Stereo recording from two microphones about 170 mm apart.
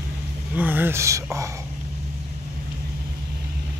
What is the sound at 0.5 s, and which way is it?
Speech, 10° right (ahead or behind).